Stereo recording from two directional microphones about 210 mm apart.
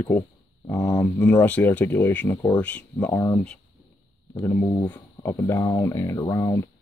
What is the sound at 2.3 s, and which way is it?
Speech, 20° left (ahead or behind).